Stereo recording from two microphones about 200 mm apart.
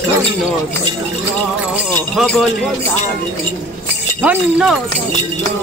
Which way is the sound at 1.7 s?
Centre (ahead or behind).